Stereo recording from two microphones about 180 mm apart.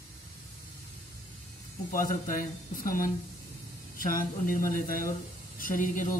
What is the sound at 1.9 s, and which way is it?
Speech, 50° left (ahead or behind).